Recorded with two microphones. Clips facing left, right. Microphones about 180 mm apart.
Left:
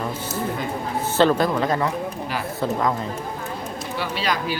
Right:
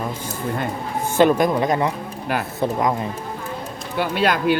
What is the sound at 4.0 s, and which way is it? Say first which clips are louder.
Speech: right 6 dB; 55° right (ahead or behind).